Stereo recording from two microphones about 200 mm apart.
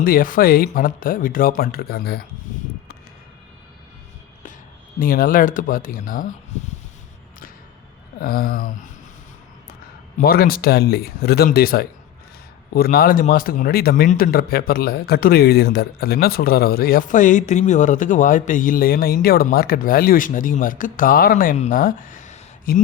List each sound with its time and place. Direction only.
0.0 s speech: 45° left (ahead or behind)
4.9 s speech: 45° left (ahead or behind)
8.2 s speech: 50° left (ahead or behind)
10.2 s speech: 50° left (ahead or behind)